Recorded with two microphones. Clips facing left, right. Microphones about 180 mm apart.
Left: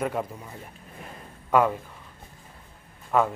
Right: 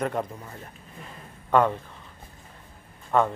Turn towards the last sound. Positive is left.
turn(degrees=5)  # may be behind; listen again after turning